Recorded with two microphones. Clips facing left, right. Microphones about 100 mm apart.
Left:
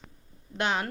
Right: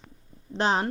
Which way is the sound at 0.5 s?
35° right (ahead or behind).